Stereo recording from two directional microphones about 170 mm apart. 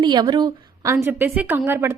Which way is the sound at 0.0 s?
25° right (ahead or behind).